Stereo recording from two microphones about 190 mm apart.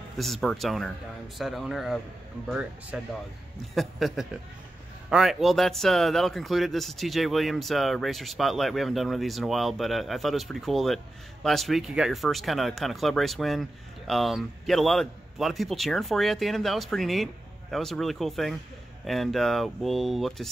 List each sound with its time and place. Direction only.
0.2 s speech: centre (ahead or behind)